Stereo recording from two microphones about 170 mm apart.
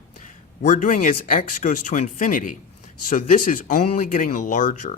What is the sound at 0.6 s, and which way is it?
Speech, 45° left (ahead or behind).